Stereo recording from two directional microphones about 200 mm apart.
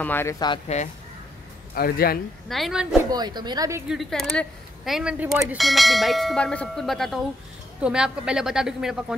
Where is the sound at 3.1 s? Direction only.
20° right (ahead or behind).